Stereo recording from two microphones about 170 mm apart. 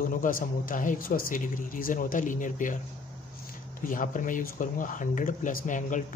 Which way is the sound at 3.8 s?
50° left (ahead or behind).